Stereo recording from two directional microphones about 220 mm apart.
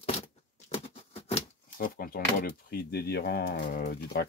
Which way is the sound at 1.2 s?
30° left (ahead or behind).